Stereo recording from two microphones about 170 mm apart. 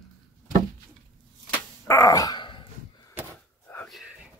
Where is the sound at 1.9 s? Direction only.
20° left (ahead or behind).